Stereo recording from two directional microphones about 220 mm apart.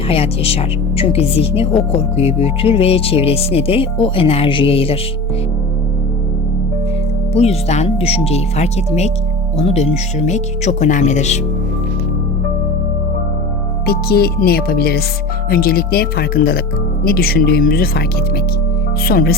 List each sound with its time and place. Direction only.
0.1 s speech: 25° left (ahead or behind)
7.3 s speech: 30° left (ahead or behind)
13.8 s speech: 45° left (ahead or behind)
19.0 s speech: 45° left (ahead or behind)